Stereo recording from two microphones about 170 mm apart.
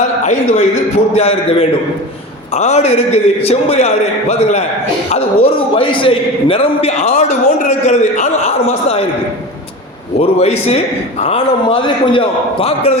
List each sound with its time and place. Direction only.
0.2 s a man's voice: 45° left (ahead or behind)
10.2 s a man's voice: 40° left (ahead or behind)